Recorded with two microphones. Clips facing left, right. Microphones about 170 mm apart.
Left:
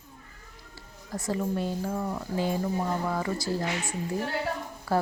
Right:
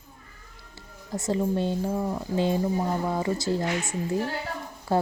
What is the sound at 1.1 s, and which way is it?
Speech, 25° right (ahead or behind).